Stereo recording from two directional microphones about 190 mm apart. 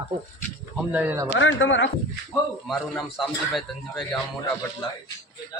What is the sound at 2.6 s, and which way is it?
A man's voice, centre (ahead or behind).